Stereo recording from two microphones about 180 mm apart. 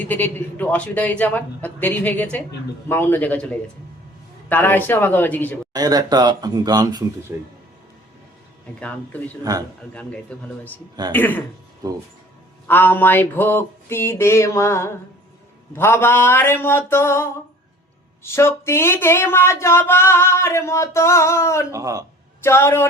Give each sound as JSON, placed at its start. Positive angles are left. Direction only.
{"t": 0.0, "sound": "speech", "side_deg": 10}
{"t": 5.7, "sound": "speech", "side_deg": -20}
{"t": 8.8, "sound": "speech", "side_deg": 10}
{"t": 9.4, "sound": "speech", "side_deg": -20}
{"t": 9.9, "sound": "speech", "side_deg": 5}
{"t": 12.6, "sound": "speech", "side_deg": 10}
{"t": 21.7, "sound": "speech", "side_deg": -20}
{"t": 22.4, "sound": "speech", "side_deg": 15}